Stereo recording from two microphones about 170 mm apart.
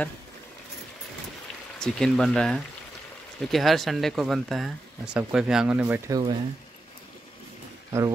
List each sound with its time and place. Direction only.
1.8 s speech: 5° left (ahead or behind)
6.0 s speech: 20° right (ahead or behind)